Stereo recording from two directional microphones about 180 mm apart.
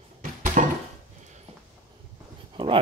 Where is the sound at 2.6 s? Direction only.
30° right (ahead or behind).